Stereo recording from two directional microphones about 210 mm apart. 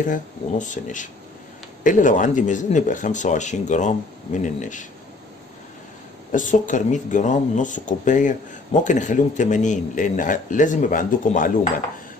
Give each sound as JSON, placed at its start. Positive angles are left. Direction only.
{"t": 0.0, "sound": "speech", "side_deg": 35}
{"t": 6.3, "sound": "speech", "side_deg": 40}